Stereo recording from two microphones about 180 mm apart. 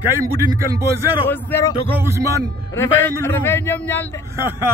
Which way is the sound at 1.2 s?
10° left (ahead or behind).